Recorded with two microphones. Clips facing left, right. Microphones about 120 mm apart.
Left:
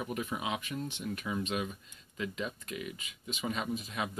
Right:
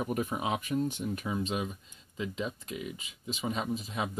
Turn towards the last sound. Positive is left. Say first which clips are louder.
# right 2 dB
turn(degrees=-25)  # may be behind; listen again after turning